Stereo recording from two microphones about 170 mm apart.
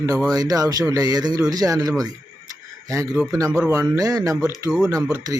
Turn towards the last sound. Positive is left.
turn(degrees=-20)  # may be behind; listen again after turning